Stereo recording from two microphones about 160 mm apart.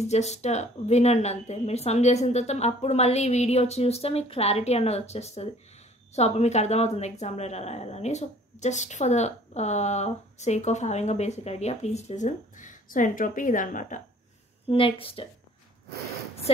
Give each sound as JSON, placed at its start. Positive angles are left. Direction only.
{"t": 0.0, "sound": "a woman's voice", "side_deg": 45}
{"t": 14.7, "sound": "speech", "side_deg": 35}
{"t": 16.5, "sound": "a woman's voice", "side_deg": 40}